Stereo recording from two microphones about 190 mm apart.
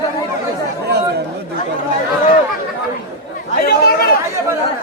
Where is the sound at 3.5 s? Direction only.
55° left (ahead or behind).